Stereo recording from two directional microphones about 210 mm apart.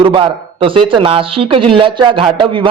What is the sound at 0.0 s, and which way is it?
Speech, 25° right (ahead or behind).